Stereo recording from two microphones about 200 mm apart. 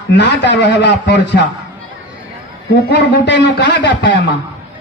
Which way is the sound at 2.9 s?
60° left (ahead or behind).